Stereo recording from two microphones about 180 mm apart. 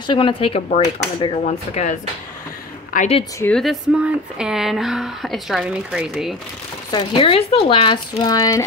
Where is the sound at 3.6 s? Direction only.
5° right (ahead or behind).